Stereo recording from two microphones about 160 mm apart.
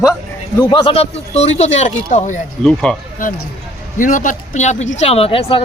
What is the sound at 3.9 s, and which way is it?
Speech, 55° left (ahead or behind).